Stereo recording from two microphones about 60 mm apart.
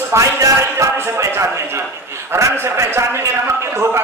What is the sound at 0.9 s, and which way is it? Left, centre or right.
A man's voice, right.